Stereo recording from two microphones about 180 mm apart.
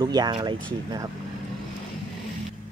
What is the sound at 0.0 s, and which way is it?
Speech, 25° right (ahead or behind).